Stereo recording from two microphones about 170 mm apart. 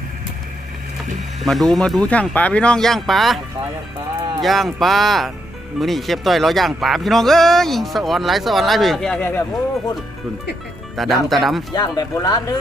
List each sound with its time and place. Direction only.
1.5 s speech: centre (ahead or behind)
10.9 s speech: centre (ahead or behind)
11.7 s speech: 20° left (ahead or behind)